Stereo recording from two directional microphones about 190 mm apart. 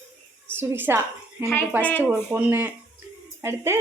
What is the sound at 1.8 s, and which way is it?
Speech, 10° left (ahead or behind).